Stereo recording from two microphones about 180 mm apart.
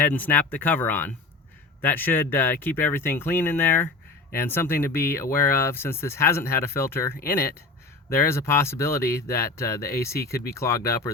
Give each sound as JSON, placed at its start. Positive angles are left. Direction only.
{"t": 0.0, "sound": "speech", "side_deg": 10}